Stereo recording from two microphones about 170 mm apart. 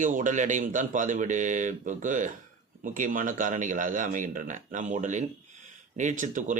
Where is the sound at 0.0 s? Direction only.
50° right (ahead or behind).